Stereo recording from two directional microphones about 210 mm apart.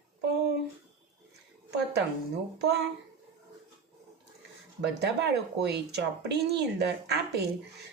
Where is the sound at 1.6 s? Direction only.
55° right (ahead or behind).